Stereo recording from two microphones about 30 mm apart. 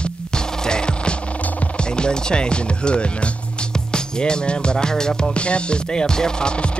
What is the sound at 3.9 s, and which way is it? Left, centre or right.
Music, left.